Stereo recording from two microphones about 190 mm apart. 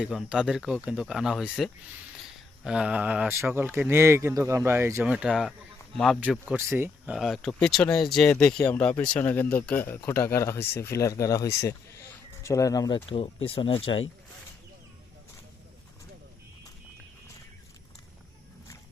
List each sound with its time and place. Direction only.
0.0 s speech: 5° right (ahead or behind); by 14.0 s 30° left (ahead or behind)